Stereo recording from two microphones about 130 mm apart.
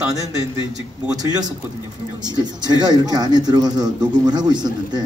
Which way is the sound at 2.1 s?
35° right (ahead or behind).